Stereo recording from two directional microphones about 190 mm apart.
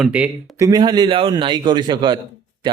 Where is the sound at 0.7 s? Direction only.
20° right (ahead or behind).